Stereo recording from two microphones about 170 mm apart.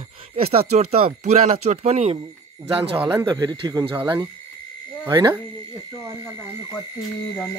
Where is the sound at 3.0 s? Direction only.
15° right (ahead or behind).